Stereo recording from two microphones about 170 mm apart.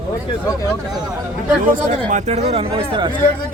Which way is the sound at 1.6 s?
50° right (ahead or behind).